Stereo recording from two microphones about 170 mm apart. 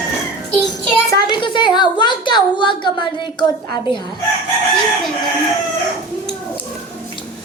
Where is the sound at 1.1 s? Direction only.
25° left (ahead or behind).